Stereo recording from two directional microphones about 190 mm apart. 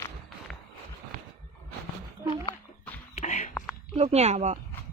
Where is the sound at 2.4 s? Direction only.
10° left (ahead or behind).